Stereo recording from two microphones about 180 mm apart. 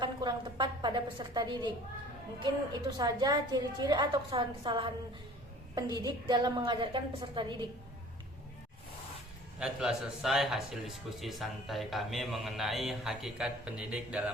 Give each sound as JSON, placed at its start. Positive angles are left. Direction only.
{"t": 0.0, "sound": "a sound", "side_deg": -25}
{"t": 2.4, "sound": "a woman's voice", "side_deg": -25}
{"t": 9.6, "sound": "a man's voice", "side_deg": -5}